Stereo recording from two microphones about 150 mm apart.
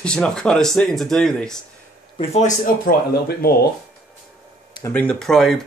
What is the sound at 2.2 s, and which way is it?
Speech, 50° left (ahead or behind).